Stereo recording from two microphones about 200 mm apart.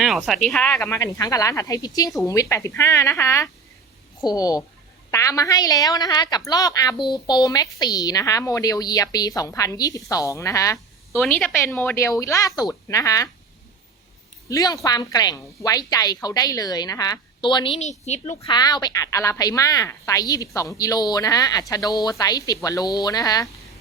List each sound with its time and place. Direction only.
0.0 s speech: centre (ahead or behind)
0.8 s a woman's voice: 15° left (ahead or behind)
14.5 s a woman's voice: 15° left (ahead or behind); by 18.3 s 35° left (ahead or behind)
18.3 s a woman's voice: 20° left (ahead or behind)